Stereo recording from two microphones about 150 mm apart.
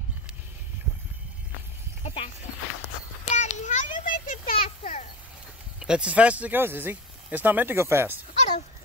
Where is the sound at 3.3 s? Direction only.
55° left (ahead or behind).